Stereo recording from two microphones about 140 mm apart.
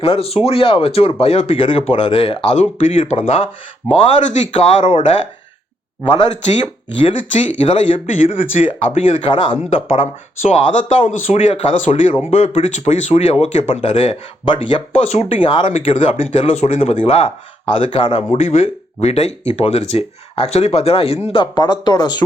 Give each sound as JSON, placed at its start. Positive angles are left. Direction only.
{"t": 0.0, "sound": "speech", "side_deg": 45}
{"t": 3.9, "sound": "speech", "side_deg": 50}
{"t": 6.3, "sound": "speech", "side_deg": 55}
{"t": 7.3, "sound": "speech", "side_deg": 45}
{"t": 15.0, "sound": "speech", "side_deg": 50}
{"t": 18.3, "sound": "speech", "side_deg": 45}